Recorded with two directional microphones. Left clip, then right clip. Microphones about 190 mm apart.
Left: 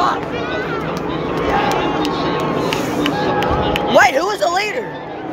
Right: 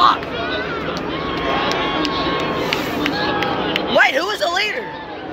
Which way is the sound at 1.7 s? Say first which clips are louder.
Left 2 dB; 35° left (ahead or behind).